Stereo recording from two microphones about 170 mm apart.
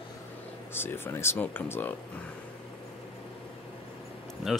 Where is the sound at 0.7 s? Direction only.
15° left (ahead or behind).